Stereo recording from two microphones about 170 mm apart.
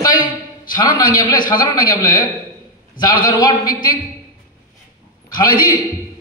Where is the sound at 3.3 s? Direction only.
25° left (ahead or behind).